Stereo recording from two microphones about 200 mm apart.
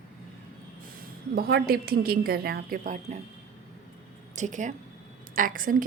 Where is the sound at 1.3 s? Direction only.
50° right (ahead or behind).